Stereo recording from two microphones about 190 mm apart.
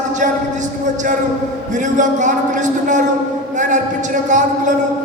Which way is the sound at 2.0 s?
40° right (ahead or behind).